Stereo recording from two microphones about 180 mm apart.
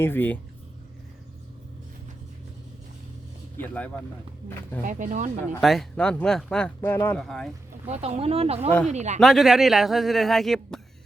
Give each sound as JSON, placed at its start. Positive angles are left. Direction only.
{"t": 0.0, "sound": "speech", "side_deg": 10}
{"t": 3.6, "sound": "speech", "side_deg": 10}
{"t": 4.9, "sound": "speech", "side_deg": -45}
{"t": 5.5, "sound": "speech", "side_deg": 0}
{"t": 7.9, "sound": "speech", "side_deg": -35}
{"t": 9.2, "sound": "speech", "side_deg": 0}